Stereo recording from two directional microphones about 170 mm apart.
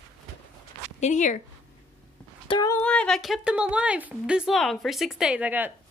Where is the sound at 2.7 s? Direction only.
5° left (ahead or behind).